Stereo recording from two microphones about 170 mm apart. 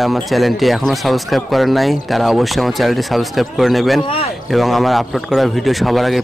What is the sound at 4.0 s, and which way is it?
Speech, 30° left (ahead or behind).